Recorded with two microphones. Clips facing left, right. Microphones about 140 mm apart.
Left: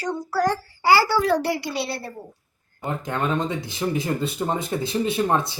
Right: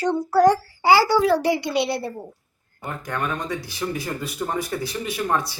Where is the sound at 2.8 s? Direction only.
25° left (ahead or behind).